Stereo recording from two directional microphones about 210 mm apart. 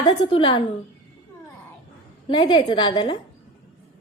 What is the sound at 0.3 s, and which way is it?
Music, 25° left (ahead or behind).